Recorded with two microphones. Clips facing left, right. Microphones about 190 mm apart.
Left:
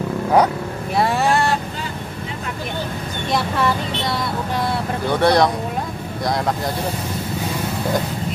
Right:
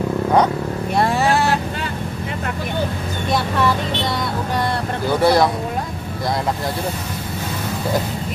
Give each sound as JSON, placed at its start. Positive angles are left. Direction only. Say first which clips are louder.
{"t": 0.9, "sound": "vehicle", "louder": "even", "side_deg": 0}
{"t": 5.2, "sound": "speech", "louder": "even", "side_deg": -5}